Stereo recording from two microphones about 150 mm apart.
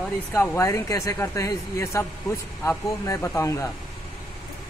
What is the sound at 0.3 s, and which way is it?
Speech, 15° left (ahead or behind).